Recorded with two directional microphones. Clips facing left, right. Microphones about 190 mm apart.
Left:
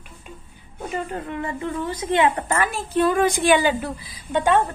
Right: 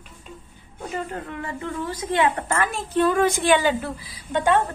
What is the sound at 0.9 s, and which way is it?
A woman's voice, 20° left (ahead or behind).